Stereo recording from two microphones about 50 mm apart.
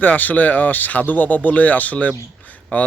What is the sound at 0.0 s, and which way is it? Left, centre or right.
Speech, left.